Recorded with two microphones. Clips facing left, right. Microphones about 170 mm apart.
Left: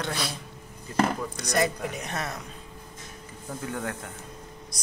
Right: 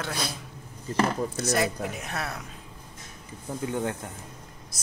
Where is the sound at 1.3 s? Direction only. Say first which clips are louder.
Even; 5° right (ahead or behind).